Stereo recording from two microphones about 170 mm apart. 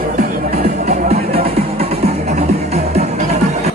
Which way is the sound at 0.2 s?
55° right (ahead or behind).